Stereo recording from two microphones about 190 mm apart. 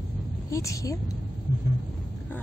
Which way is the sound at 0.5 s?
15° left (ahead or behind).